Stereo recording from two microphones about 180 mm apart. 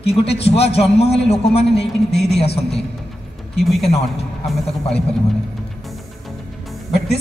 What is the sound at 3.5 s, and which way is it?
Speech, centre (ahead or behind).